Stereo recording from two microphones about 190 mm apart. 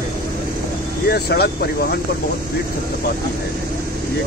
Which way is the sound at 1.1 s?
55° left (ahead or behind).